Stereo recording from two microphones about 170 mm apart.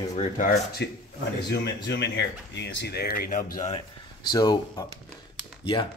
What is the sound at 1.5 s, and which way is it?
Speech, 90° left.